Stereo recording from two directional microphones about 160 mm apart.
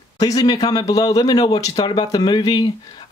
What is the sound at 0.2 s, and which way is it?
Speech, 25° left (ahead or behind).